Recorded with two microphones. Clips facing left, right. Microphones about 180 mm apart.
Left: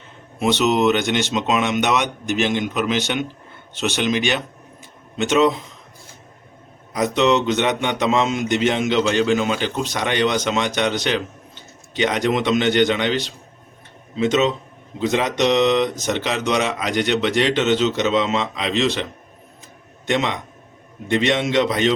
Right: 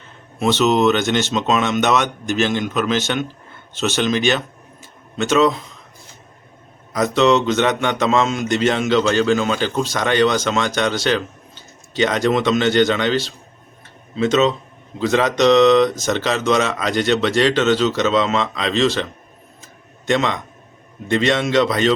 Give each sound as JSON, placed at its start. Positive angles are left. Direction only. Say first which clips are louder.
{"t": 0.3, "sound": "a man's voice", "louder": "right 2 dB", "side_deg": 15}
{"t": 6.9, "sound": "a man's voice", "louder": "right 2 dB", "side_deg": 15}
{"t": 20.1, "sound": "a man's voice", "louder": "right 2 dB", "side_deg": 15}